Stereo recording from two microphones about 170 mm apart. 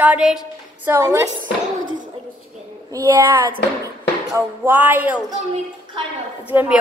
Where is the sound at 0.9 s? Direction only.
20° right (ahead or behind).